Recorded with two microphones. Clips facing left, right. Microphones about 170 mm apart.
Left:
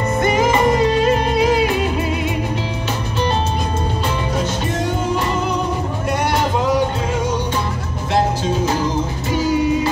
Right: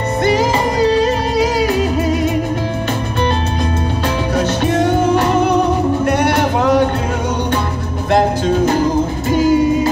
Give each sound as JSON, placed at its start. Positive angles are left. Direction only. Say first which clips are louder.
{"t": 0.2, "sound": "music", "louder": "right 1 dB", "side_deg": -35}
{"t": 4.4, "sound": "music", "louder": "right 6 dB", "side_deg": -70}
{"t": 9.3, "sound": "music", "louder": "right 6 dB", "side_deg": -50}